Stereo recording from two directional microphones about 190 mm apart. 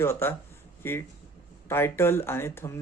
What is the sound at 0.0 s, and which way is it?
Speech, 10° left (ahead or behind).